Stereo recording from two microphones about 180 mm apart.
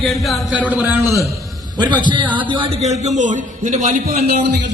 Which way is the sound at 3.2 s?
45° right (ahead or behind).